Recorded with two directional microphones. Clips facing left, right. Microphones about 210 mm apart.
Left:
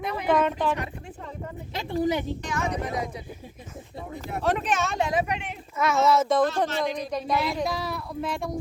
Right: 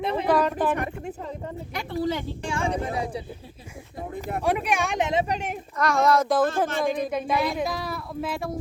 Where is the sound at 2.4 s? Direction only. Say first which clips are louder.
Right 2 dB; 30° right (ahead or behind).